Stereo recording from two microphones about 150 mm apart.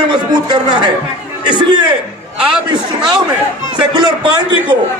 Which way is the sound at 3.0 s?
30° right (ahead or behind).